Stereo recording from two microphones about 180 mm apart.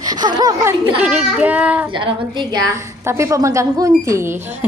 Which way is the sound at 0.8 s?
5° right (ahead or behind).